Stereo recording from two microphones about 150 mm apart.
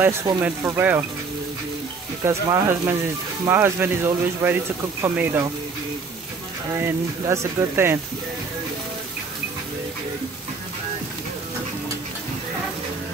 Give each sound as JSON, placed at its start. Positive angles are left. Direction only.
{"t": 0.0, "sound": "speech", "side_deg": -15}
{"t": 2.2, "sound": "speech", "side_deg": -20}
{"t": 6.8, "sound": "speech", "side_deg": -15}